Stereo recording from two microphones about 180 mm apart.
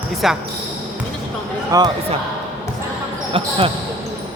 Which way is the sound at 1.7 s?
20° right (ahead or behind).